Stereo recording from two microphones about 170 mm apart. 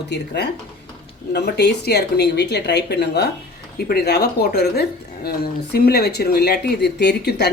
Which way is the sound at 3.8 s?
65° left (ahead or behind).